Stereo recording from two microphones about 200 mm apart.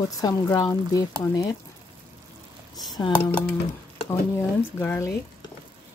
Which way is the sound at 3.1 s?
10° left (ahead or behind).